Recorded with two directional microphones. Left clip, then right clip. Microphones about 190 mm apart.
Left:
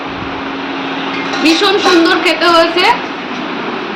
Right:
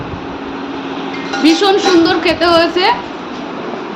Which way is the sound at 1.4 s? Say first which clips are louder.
Even; 40° right (ahead or behind).